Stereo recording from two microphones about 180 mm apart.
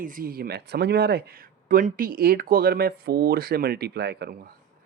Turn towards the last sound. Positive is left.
turn(degrees=-65)  # may be behind; listen again after turning